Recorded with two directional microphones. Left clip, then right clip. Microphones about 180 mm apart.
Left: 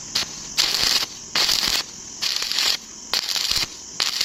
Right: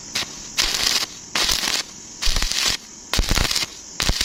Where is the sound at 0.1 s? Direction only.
20° right (ahead or behind).